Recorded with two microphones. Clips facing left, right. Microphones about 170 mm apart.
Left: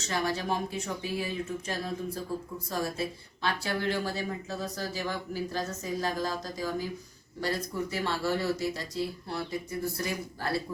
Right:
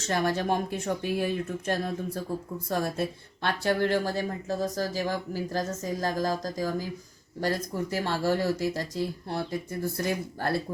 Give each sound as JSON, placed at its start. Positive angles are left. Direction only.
{"t": 0.0, "sound": "speech", "side_deg": -50}